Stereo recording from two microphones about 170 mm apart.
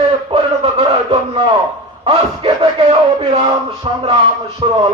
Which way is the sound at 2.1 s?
35° right (ahead or behind).